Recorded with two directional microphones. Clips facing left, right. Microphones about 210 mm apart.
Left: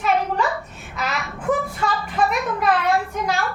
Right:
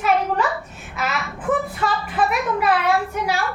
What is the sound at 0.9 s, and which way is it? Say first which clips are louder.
A child's voice: right 1 dB; 5° right (ahead or behind).